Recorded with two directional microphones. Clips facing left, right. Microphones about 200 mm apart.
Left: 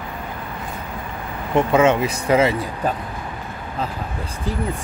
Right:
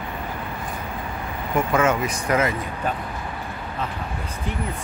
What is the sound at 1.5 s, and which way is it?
Speech, 25° left (ahead or behind).